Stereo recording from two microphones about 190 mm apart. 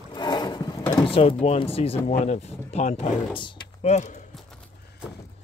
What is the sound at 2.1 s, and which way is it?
Speech, 35° left (ahead or behind).